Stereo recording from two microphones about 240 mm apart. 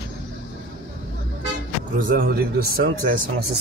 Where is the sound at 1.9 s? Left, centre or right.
Right.